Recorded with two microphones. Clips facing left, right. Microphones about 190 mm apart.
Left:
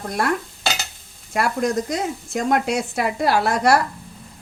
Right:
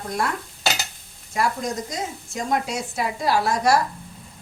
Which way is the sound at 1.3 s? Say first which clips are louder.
Left 4 dB; 65° left (ahead or behind).